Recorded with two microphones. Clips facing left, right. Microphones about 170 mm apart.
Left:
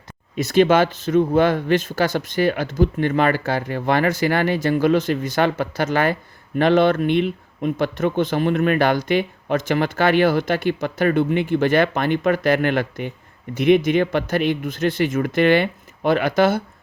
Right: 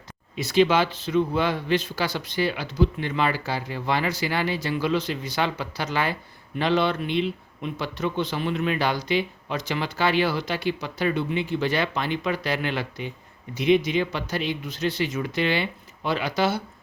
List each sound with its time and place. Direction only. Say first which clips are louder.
0.3 s speech: left 5 dB; 50° left (ahead or behind)